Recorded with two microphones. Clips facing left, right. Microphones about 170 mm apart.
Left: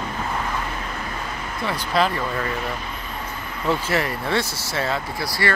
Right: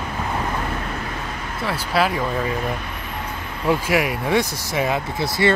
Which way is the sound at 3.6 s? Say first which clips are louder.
Right 3 dB; 10° right (ahead or behind).